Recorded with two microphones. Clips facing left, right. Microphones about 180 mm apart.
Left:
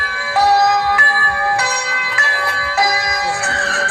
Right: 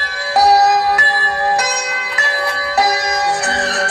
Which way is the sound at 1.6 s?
40° right (ahead or behind).